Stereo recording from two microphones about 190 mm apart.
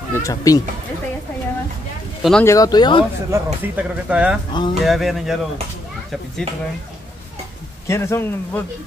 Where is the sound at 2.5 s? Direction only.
20° left (ahead or behind).